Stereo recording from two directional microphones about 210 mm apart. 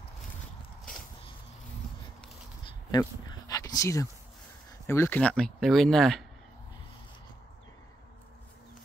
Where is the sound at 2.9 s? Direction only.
20° left (ahead or behind).